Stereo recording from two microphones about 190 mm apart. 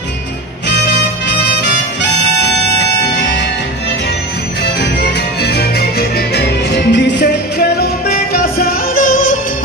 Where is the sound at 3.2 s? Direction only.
65° left (ahead or behind).